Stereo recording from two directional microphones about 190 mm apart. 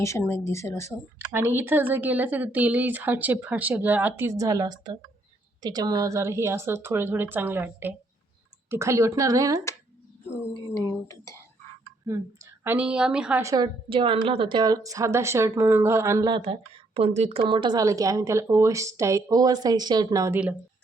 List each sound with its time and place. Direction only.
0.0 s speech: 15° left (ahead or behind)
1.3 s a woman's voice: 10° right (ahead or behind)
10.8 s speech: 15° left (ahead or behind)
12.6 s a woman's voice: 10° right (ahead or behind)
13.4 s a woman's voice: 20° right (ahead or behind)